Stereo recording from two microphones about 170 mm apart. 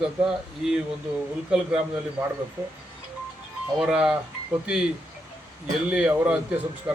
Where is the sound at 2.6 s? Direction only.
15° right (ahead or behind).